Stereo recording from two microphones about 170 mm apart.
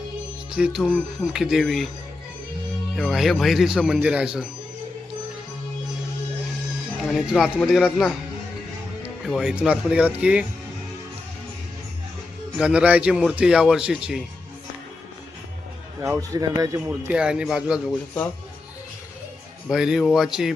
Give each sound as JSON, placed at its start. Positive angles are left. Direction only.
{"t": 0.5, "sound": "speech", "side_deg": -5}
{"t": 2.9, "sound": "speech", "side_deg": 0}
{"t": 7.1, "sound": "speech", "side_deg": 0}
{"t": 12.5, "sound": "speech", "side_deg": -5}
{"t": 16.0, "sound": "a man's voice", "side_deg": -15}
{"t": 17.1, "sound": "speech", "side_deg": -5}
{"t": 19.6, "sound": "speech", "side_deg": -5}